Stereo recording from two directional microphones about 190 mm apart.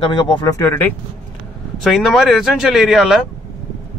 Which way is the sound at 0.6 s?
10° left (ahead or behind).